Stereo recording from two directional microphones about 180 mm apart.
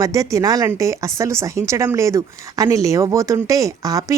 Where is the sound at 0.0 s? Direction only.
20° right (ahead or behind).